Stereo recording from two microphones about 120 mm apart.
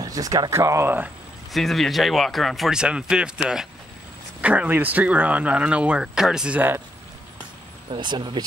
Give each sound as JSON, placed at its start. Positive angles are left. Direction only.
{"t": 0.0, "sound": "speech", "side_deg": -30}
{"t": 1.5, "sound": "speech", "side_deg": 0}
{"t": 7.9, "sound": "speech", "side_deg": -40}